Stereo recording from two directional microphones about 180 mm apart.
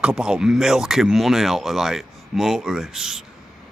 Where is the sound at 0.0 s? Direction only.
5° right (ahead or behind).